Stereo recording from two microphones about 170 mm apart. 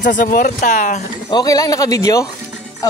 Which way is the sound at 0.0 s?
50° left (ahead or behind).